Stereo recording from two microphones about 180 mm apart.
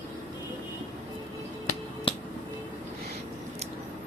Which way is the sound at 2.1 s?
30° left (ahead or behind).